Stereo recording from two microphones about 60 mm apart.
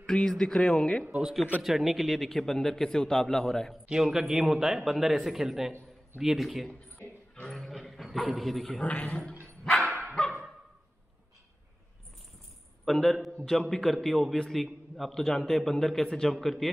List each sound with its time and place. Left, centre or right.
0.0 s speech: centre
1.0 s speech: right
1.6 s speech: centre
3.8 s speech: centre
6.7 s a sound: left
7.4 s dog: centre
8.8 s speech: left
10.2 s dog: centre
12.8 s speech: centre